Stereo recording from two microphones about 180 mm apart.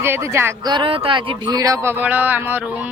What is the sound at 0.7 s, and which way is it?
Speech, 30° right (ahead or behind).